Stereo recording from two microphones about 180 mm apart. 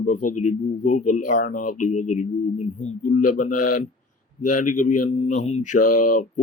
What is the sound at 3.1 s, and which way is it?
Speech, 45° left (ahead or behind).